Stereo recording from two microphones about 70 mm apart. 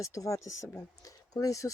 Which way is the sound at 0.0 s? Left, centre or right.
Left.